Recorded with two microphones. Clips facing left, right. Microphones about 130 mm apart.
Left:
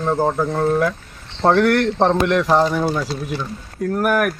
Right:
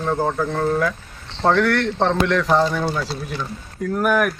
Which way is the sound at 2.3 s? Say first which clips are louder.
Left 2 dB; 15° left (ahead or behind).